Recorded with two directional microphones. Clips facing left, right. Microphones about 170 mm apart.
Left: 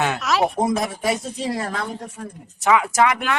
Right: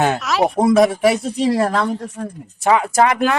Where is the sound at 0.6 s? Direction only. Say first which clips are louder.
Right 9 dB; 80° right.